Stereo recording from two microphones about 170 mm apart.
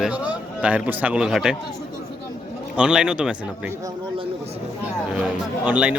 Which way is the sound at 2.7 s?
5° right (ahead or behind).